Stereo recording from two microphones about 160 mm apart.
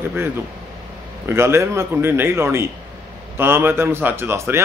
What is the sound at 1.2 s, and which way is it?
A man's voice, 15° right (ahead or behind).